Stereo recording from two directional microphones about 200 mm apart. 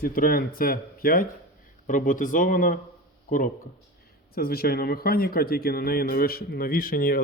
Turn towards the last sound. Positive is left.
turn(degrees=45)  # may be behind; listen again after turning